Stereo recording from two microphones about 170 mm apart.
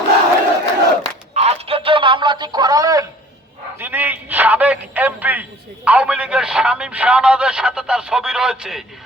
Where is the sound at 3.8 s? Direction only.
10° right (ahead or behind).